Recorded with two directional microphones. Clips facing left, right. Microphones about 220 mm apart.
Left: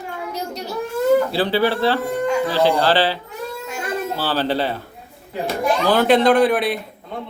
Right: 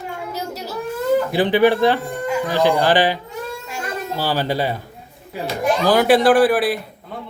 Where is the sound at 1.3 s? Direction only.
15° right (ahead or behind).